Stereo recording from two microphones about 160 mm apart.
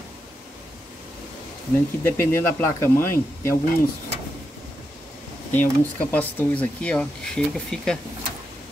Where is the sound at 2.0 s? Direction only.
15° left (ahead or behind).